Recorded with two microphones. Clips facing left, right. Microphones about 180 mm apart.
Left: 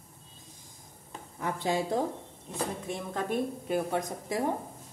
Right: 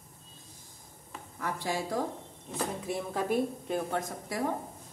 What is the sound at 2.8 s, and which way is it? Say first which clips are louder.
Speech: right 1 dB; 5° right (ahead or behind).